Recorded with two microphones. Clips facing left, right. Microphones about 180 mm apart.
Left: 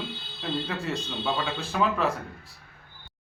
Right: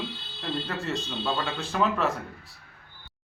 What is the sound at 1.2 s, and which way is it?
Speech, centre (ahead or behind).